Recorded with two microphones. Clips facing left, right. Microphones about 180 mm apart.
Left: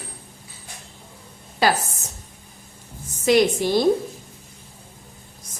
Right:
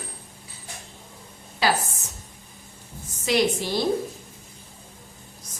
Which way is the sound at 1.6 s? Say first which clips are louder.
Left 3 dB; 50° left (ahead or behind).